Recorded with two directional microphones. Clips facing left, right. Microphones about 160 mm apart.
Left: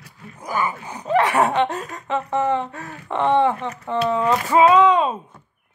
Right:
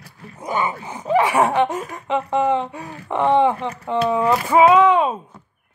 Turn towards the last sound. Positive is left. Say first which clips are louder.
# right 1 dB
turn(degrees=-10)  # may be behind; listen again after turning